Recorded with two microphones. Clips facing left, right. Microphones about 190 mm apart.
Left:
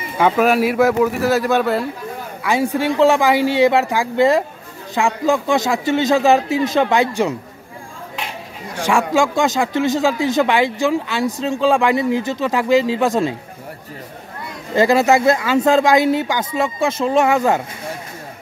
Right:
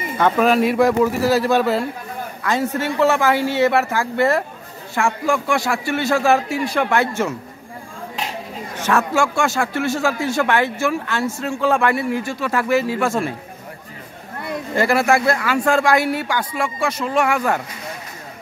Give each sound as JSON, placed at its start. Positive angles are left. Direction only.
{"t": 0.2, "sound": "speech", "side_deg": 5}
{"t": 2.4, "sound": "a man's voice", "side_deg": 10}
{"t": 8.7, "sound": "a man's voice", "side_deg": 15}
{"t": 14.8, "sound": "speech", "side_deg": 20}